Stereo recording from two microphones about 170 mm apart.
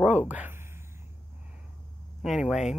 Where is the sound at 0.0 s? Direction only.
5° right (ahead or behind).